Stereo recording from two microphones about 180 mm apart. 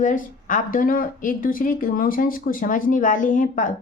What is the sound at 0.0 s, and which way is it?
Speech, 45° left (ahead or behind).